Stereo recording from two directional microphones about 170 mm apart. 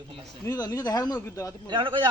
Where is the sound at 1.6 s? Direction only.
30° right (ahead or behind).